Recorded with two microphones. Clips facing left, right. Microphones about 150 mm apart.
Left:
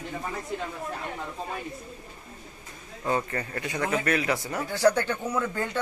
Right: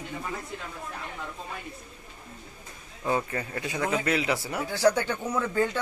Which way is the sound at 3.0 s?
10° right (ahead or behind).